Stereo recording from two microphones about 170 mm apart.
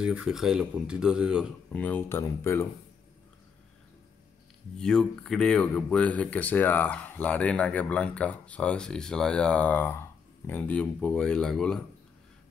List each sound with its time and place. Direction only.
0.0 s speech: 5° right (ahead or behind)
1.7 s speech: 10° left (ahead or behind)
4.7 s speech: 5° left (ahead or behind)